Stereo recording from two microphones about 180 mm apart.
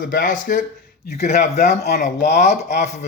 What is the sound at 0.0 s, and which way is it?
Speech, 50° left (ahead or behind).